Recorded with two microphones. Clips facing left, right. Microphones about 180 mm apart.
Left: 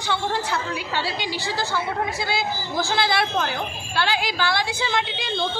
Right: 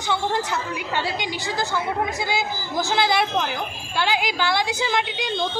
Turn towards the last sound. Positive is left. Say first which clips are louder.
# right 1 dB
turn(degrees=-15)  # may be behind; listen again after turning